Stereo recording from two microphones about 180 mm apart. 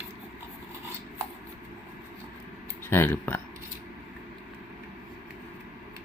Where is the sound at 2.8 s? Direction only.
15° left (ahead or behind).